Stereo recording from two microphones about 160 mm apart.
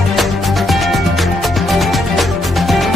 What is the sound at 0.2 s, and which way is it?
Music, centre (ahead or behind).